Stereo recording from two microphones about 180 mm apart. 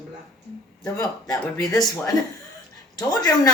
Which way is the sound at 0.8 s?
20° left (ahead or behind).